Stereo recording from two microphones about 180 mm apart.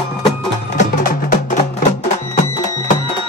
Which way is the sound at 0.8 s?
45° left (ahead or behind).